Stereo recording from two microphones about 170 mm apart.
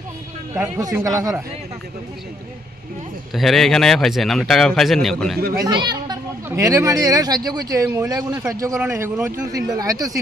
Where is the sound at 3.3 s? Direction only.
Centre (ahead or behind).